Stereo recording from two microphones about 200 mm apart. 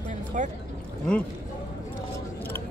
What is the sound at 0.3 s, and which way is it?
Speech, 40° right (ahead or behind).